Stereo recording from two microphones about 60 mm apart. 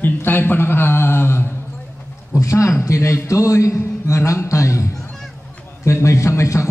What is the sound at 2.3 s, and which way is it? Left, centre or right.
A man's voice, left.